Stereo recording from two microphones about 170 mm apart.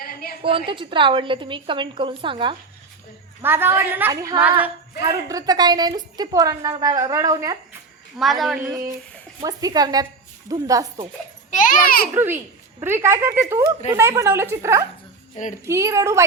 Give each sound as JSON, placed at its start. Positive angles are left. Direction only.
{"t": 0.0, "sound": "a sound", "side_deg": 60}
{"t": 0.4, "sound": "a woman's voice", "side_deg": -30}
{"t": 3.4, "sound": "a woman's voice", "side_deg": -15}
{"t": 8.2, "sound": "a woman's voice", "side_deg": 0}
{"t": 9.4, "sound": "a woman's voice", "side_deg": -20}
{"t": 11.5, "sound": "a child's voice", "side_deg": 50}
{"t": 12.8, "sound": "a woman's voice", "side_deg": -15}